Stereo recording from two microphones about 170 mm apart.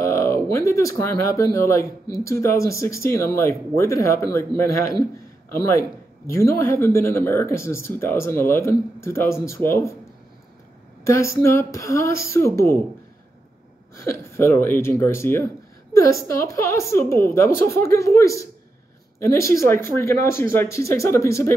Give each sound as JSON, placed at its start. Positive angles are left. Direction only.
{"t": 0.0, "sound": "speech", "side_deg": 15}
{"t": 11.1, "sound": "speech", "side_deg": 15}
{"t": 13.9, "sound": "speech", "side_deg": 15}